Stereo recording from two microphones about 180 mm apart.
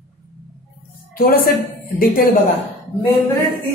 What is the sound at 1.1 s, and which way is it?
Speech, 55° left (ahead or behind).